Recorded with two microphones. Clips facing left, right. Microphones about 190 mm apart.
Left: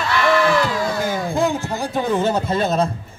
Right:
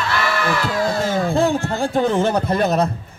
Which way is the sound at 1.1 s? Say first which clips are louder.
Right 3 dB; 60° right (ahead or behind).